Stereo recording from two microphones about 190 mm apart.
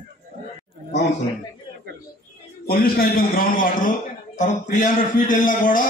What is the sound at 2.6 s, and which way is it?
A man's voice, 55° left (ahead or behind).